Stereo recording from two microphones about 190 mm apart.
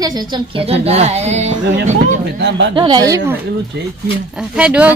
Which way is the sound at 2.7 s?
20° right (ahead or behind).